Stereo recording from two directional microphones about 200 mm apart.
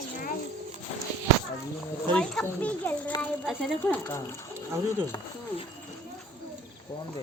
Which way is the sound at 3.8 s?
15° left (ahead or behind).